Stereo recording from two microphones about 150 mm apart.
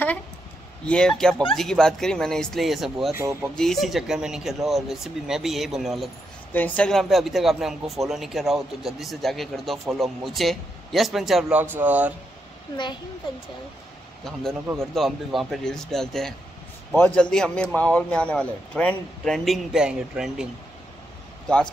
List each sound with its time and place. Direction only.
0.8 s speech: 5° left (ahead or behind)
3.1 s speech: 20° right (ahead or behind)
3.5 s speech: centre (ahead or behind)
6.5 s speech: 10° left (ahead or behind); by 12.1 s 10° right (ahead or behind)
15.0 s speech: centre (ahead or behind)